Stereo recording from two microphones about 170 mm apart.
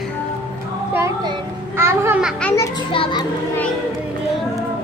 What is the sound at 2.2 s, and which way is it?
Speech, 5° right (ahead or behind).